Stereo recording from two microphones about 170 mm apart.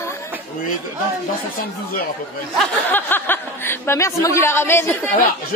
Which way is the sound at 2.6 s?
10° left (ahead or behind).